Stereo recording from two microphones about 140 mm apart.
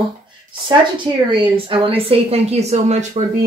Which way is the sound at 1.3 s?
40° right (ahead or behind).